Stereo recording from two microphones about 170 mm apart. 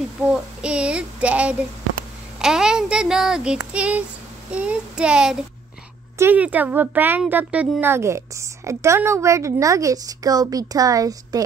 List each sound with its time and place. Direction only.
0.3 s speech: 5° right (ahead or behind)
4.5 s child singing: 5° right (ahead or behind)
6.1 s a woman's voice: 10° right (ahead or behind)